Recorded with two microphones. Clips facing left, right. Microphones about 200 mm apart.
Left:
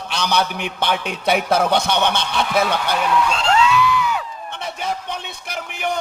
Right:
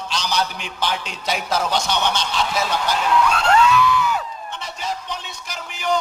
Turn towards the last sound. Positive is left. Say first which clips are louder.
# right 1 dB
turn(degrees=60)  # may be behind; listen again after turning